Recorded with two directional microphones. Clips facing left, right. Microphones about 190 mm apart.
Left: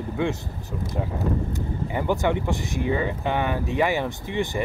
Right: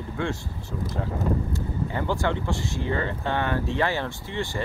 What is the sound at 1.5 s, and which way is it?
Speech, 15° left (ahead or behind).